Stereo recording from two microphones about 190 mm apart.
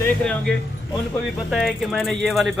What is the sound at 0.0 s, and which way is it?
Speech, 5° left (ahead or behind).